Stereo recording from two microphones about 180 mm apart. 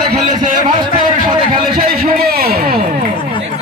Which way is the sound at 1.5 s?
50° right (ahead or behind).